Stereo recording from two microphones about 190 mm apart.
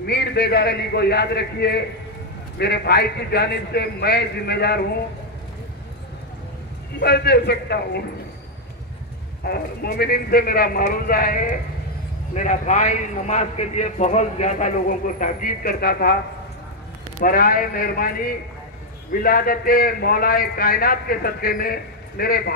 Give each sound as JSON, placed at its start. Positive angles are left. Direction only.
{"t": 0.0, "sound": "a man's voice", "side_deg": 60}
{"t": 7.0, "sound": "a man's voice", "side_deg": 55}
{"t": 9.4, "sound": "a man's voice", "side_deg": 55}
{"t": 17.2, "sound": "a man's voice", "side_deg": 50}